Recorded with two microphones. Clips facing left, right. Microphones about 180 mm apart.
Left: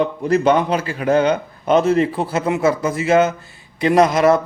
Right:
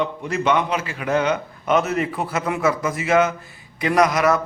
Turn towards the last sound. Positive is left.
turn(degrees=30)  # may be behind; listen again after turning